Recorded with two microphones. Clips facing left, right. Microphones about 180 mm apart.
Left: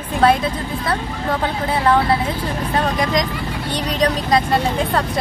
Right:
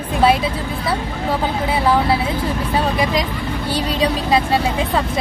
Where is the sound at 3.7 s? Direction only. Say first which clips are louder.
Even; 5° right (ahead or behind).